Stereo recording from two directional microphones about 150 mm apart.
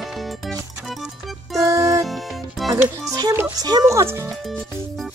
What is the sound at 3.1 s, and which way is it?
Speech, 20° right (ahead or behind).